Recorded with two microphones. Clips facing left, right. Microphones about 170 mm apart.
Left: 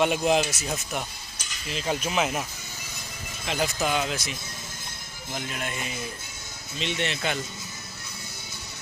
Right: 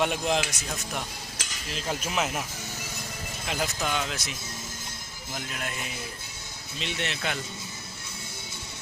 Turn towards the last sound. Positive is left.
turn(degrees=0)  # may be behind; listen again after turning